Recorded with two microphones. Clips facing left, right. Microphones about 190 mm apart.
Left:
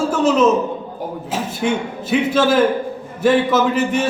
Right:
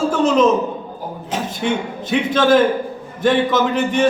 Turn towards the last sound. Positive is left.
turn(degrees=5)  # may be behind; listen again after turning